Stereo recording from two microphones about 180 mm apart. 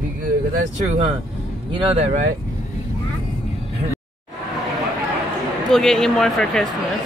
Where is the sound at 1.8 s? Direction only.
35° right (ahead or behind).